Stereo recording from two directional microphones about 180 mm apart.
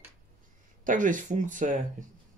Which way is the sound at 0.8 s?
45° right (ahead or behind).